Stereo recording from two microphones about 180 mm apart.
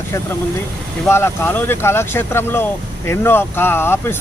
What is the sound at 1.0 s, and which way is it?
Speech, 15° left (ahead or behind).